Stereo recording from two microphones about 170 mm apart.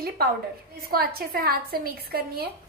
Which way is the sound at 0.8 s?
65° right (ahead or behind).